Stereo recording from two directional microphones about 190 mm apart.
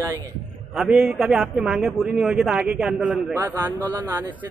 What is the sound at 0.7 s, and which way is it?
Speech, centre (ahead or behind).